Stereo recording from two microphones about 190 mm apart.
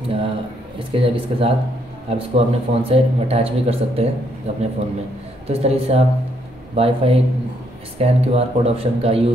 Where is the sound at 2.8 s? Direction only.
30° right (ahead or behind).